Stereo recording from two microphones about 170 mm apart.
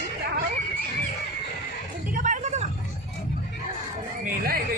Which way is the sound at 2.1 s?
50° right (ahead or behind).